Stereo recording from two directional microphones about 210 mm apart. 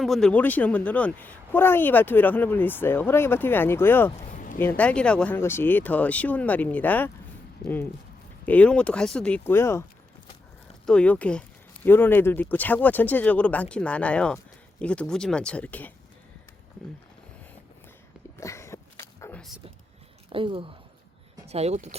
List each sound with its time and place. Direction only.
0.0 s a woman's voice: centre (ahead or behind)
4.3 s a sound: 40° left (ahead or behind)
4.8 s a woman's voice: 5° left (ahead or behind)
8.4 s a woman's voice: 5° left (ahead or behind)
10.8 s a woman's voice: 5° left (ahead or behind)
18.3 s a sound: 15° left (ahead or behind)
19.4 s speech: centre (ahead or behind)
20.3 s speech: 25° right (ahead or behind)